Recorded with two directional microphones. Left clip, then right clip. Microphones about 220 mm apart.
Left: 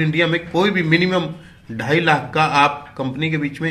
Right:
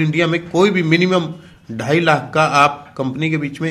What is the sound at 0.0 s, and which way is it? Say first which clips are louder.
A man's voice: right 1 dB; 40° right (ahead or behind).